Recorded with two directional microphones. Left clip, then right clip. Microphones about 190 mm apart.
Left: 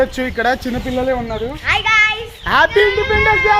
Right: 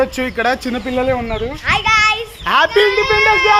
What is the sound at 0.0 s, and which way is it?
A man's voice, 10° right (ahead or behind).